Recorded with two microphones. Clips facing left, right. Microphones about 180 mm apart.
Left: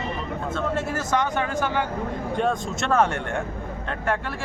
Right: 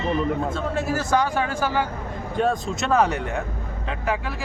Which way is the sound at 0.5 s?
5° right (ahead or behind).